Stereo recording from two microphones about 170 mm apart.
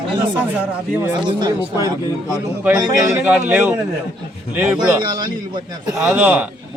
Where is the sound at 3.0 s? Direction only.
15° right (ahead or behind).